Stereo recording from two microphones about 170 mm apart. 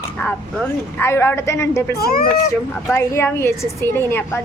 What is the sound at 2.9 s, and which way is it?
A woman's voice, 15° left (ahead or behind).